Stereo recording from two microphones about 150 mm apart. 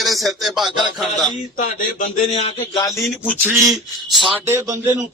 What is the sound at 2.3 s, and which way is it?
Speech, 40° left (ahead or behind).